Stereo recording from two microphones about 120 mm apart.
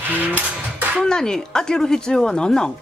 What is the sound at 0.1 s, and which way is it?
Music, 15° right (ahead or behind).